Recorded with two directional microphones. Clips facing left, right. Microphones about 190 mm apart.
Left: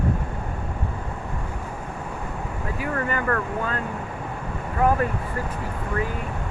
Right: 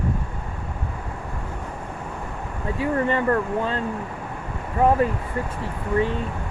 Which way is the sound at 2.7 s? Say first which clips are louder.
Right 5 dB; 30° right (ahead or behind).